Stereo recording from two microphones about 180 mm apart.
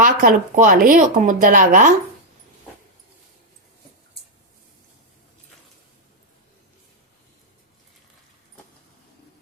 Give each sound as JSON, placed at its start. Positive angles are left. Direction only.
{"t": 0.0, "sound": "speech", "side_deg": -50}